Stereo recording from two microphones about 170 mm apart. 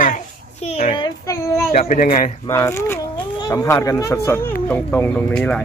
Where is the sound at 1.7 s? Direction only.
50° left (ahead or behind).